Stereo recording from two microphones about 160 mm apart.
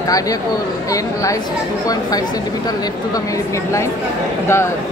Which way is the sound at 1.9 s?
25° left (ahead or behind).